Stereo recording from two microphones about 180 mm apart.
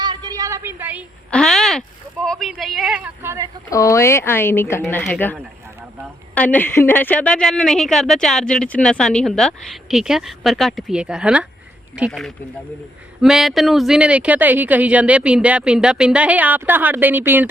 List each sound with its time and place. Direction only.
0.0 s a sound: 25° right (ahead or behind)
1.3 s a woman's voice: 5° left (ahead or behind)
3.7 s a woman's voice: 20° left (ahead or behind); by 17.5 s 10° right (ahead or behind)